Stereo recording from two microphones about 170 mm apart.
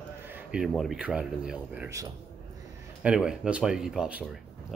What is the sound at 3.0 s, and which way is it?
Speech, 5° right (ahead or behind).